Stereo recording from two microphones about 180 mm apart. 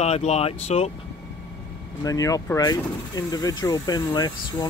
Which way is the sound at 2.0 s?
20° left (ahead or behind).